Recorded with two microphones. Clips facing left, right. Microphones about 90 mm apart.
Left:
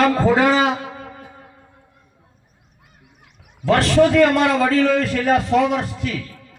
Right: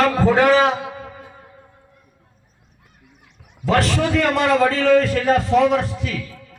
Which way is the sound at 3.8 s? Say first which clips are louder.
Left 6 dB; centre (ahead or behind).